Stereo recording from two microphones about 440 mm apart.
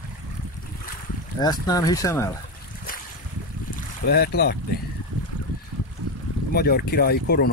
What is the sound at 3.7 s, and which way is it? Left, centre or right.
Boat, left.